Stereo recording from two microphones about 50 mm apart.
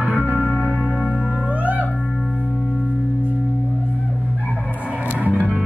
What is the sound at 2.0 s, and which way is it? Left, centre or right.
Music, centre.